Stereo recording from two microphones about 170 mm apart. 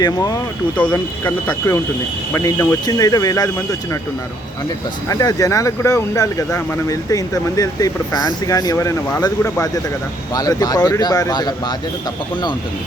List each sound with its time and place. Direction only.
0.0 s speech: 20° left (ahead or behind)
5.0 s speech: 20° left (ahead or behind)